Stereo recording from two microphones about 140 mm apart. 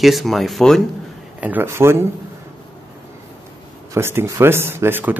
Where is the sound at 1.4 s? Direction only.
15° right (ahead or behind).